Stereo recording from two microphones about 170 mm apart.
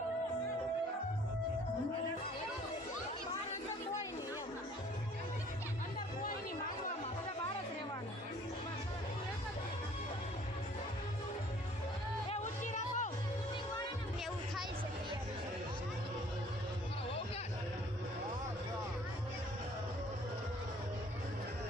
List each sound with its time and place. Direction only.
12.3 s music: 45° left (ahead or behind)